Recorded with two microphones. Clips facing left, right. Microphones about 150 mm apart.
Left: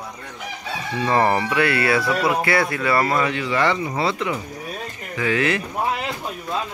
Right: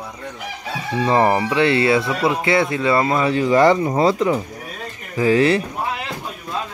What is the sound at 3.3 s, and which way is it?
Speech, 40° right (ahead or behind).